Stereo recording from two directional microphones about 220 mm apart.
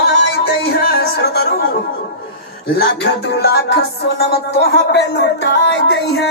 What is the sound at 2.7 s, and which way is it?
Speech, 45° left (ahead or behind).